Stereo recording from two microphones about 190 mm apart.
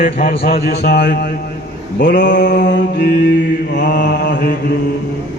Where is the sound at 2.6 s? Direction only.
65° left (ahead or behind).